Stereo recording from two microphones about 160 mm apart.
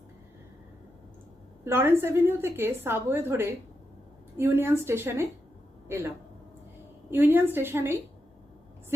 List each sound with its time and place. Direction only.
1.6 s a woman's voice: 15° right (ahead or behind)
7.1 s a woman's voice: 10° right (ahead or behind)